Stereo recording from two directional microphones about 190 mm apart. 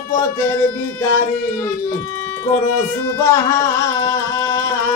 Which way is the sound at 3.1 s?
15° left (ahead or behind).